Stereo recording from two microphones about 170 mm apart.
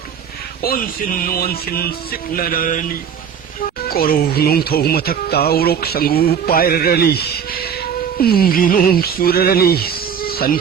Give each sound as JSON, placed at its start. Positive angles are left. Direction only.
{"t": 0.6, "sound": "speech", "side_deg": 55}
{"t": 3.8, "sound": "speech", "side_deg": 60}